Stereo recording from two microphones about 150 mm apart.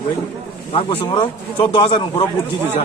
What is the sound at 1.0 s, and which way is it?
A man's voice, 30° left (ahead or behind).